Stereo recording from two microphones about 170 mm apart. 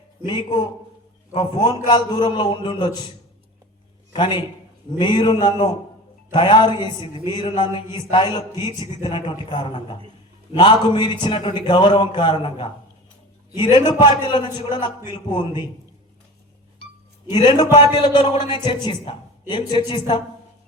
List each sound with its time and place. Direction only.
0.3 s a man's voice: 25° left (ahead or behind)
4.1 s a man's voice: 25° left (ahead or behind)
17.3 s a man's voice: 25° left (ahead or behind)